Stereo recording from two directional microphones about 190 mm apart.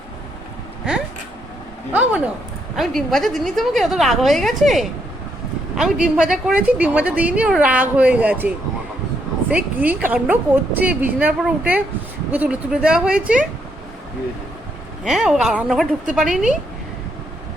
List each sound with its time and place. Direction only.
1.9 s a woman's voice: 5° right (ahead or behind)
15.0 s a woman's voice: centre (ahead or behind)